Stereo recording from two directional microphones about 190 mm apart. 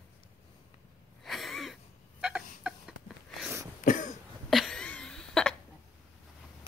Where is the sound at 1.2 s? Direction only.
Centre (ahead or behind).